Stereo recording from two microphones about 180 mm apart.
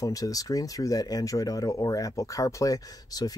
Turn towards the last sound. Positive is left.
turn(degrees=20)  # may be behind; listen again after turning